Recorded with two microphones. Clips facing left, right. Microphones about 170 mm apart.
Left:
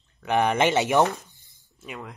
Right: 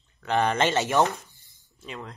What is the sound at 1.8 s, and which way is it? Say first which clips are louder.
Speech: even; 5° left (ahead or behind).